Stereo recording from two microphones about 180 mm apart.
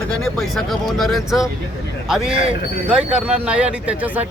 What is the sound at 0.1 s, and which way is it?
Speech, 5° left (ahead or behind).